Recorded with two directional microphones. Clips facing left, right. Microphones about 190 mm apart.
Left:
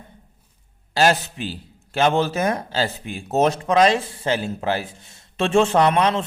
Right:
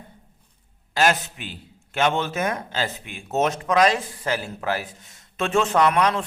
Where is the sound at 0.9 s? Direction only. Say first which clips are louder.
Left 3 dB; 30° left (ahead or behind).